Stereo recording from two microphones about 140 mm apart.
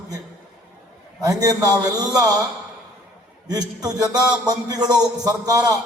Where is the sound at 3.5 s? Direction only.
30° right (ahead or behind).